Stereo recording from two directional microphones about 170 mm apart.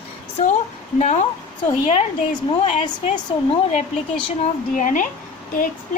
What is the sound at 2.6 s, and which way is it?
A woman's voice, 40° left (ahead or behind).